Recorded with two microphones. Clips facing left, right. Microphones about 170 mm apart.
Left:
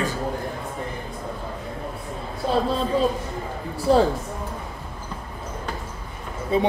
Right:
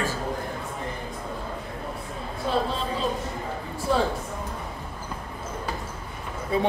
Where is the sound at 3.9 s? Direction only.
35° left (ahead or behind).